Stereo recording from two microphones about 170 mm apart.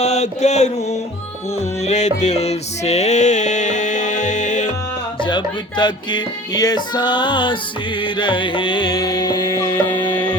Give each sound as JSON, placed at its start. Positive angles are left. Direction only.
{"t": 0.0, "sound": "mantra", "side_deg": 40}
{"t": 1.8, "sound": "music", "side_deg": 40}
{"t": 5.2, "sound": "music", "side_deg": 25}